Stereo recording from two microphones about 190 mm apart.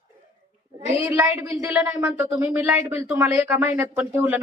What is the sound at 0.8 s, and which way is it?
Speech, 15° right (ahead or behind).